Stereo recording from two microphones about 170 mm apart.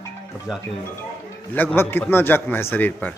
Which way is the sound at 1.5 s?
10° left (ahead or behind).